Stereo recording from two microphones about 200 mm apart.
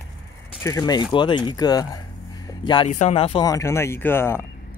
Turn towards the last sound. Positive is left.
turn(degrees=10)  # may be behind; listen again after turning